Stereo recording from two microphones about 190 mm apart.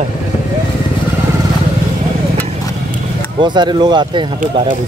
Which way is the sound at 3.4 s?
25° right (ahead or behind).